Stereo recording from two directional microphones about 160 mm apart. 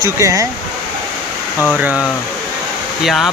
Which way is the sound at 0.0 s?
20° right (ahead or behind).